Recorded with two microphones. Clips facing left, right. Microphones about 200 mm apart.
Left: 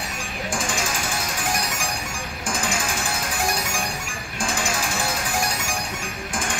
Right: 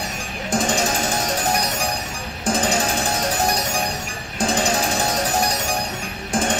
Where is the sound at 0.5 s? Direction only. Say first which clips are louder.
Right 7 dB; 40° right (ahead or behind).